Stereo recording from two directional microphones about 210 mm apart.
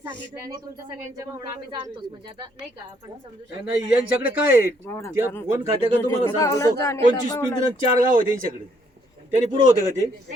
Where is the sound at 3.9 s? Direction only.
10° right (ahead or behind).